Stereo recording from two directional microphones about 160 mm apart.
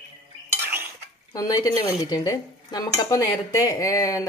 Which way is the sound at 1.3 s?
20° left (ahead or behind).